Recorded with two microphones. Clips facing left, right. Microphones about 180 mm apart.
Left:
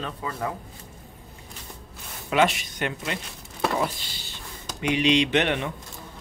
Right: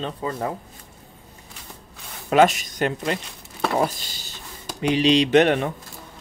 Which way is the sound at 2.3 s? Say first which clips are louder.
Right 5 dB; 40° right (ahead or behind).